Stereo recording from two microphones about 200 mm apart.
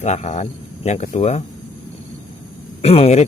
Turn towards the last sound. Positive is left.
turn(degrees=30)  # may be behind; listen again after turning